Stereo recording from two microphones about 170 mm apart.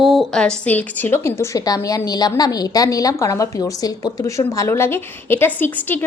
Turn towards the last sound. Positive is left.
turn(degrees=10)  # may be behind; listen again after turning